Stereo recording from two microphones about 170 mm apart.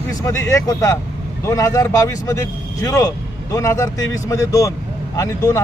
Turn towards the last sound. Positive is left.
turn(degrees=20)  # may be behind; listen again after turning